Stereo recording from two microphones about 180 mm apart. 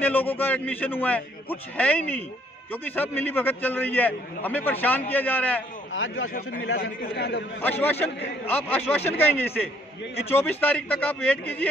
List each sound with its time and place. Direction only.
0.0 s a man's voice: 10° left (ahead or behind)
5.9 s speech: 90° left
7.0 s a man's voice: 65° left (ahead or behind)
7.6 s a man's voice: 10° left (ahead or behind)